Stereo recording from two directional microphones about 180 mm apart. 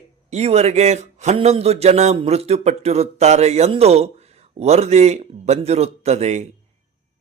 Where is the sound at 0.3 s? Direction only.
35° right (ahead or behind).